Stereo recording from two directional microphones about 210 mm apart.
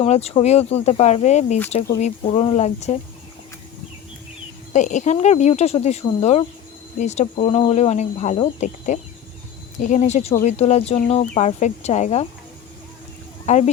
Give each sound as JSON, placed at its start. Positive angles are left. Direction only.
{"t": 0.0, "sound": "speech", "side_deg": 30}
{"t": 4.7, "sound": "speech", "side_deg": 35}
{"t": 13.4, "sound": "speech", "side_deg": 35}